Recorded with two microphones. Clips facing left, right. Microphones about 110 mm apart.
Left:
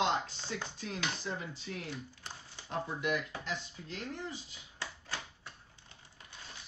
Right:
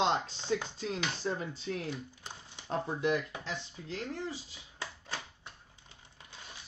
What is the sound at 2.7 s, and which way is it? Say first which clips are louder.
Speech: right 4 dB; 30° right (ahead or behind).